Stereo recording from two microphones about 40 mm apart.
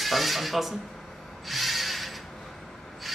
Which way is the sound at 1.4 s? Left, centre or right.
Centre.